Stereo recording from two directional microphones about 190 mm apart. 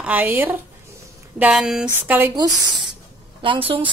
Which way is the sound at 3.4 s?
25° right (ahead or behind).